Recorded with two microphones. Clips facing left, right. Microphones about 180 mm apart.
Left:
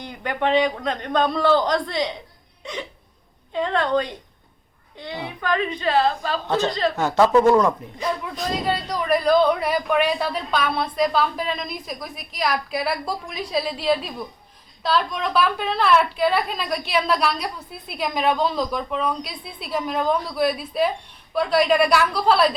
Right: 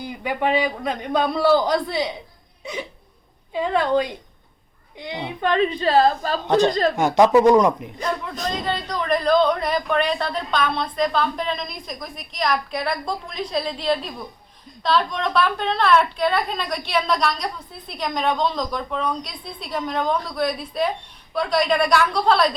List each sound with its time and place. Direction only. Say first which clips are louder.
0.0 s a man's voice: right 1 dB; 5° right (ahead or behind)
3.5 s a man's voice: right 1 dB; 10° right (ahead or behind); by 6.9 s 45° right (ahead or behind)
6.9 s a man's voice: even; 15° right (ahead or behind)
8.4 s a woman's voice: left 2 dB; 10° left (ahead or behind)